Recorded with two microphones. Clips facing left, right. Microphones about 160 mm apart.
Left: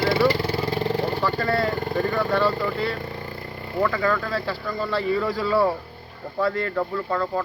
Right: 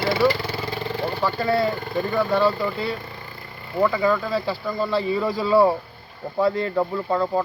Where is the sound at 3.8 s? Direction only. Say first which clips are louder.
Right 3 dB; 15° right (ahead or behind).